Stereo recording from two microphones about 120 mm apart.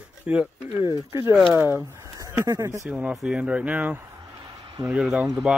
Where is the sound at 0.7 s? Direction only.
25° right (ahead or behind).